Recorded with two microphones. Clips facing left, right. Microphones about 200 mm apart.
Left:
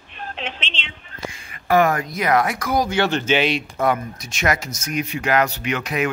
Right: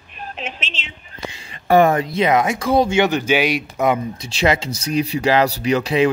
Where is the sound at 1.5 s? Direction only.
30° right (ahead or behind).